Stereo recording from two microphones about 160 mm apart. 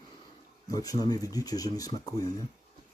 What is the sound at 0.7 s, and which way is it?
Speech, 25° left (ahead or behind).